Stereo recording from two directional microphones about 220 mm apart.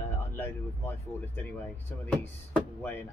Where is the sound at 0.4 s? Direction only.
10° left (ahead or behind).